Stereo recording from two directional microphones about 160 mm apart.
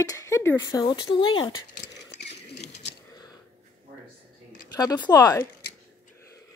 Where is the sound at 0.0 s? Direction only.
20° left (ahead or behind).